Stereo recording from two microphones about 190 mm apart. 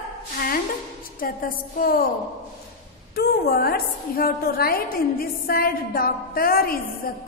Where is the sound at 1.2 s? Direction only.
50° left (ahead or behind).